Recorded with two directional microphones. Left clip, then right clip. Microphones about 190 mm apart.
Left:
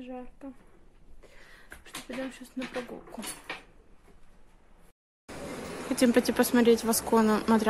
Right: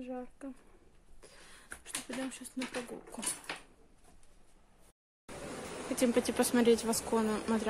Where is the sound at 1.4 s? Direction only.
20° right (ahead or behind).